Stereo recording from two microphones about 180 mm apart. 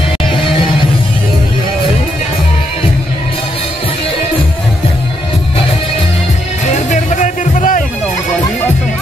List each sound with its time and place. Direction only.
6.6 s music: 40° left (ahead or behind)